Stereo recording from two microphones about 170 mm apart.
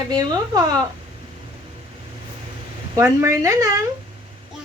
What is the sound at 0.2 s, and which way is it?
Speech, 20° right (ahead or behind).